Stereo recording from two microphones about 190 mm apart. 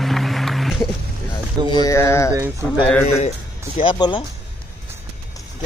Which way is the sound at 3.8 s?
25° left (ahead or behind).